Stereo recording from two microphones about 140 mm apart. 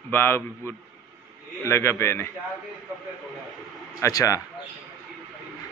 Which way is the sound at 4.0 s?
25° left (ahead or behind).